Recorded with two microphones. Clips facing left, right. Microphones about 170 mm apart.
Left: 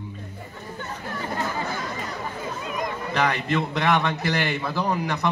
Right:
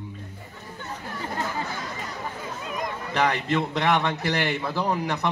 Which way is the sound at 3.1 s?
25° right (ahead or behind).